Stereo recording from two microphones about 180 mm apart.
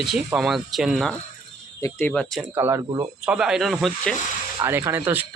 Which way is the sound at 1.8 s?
15° left (ahead or behind).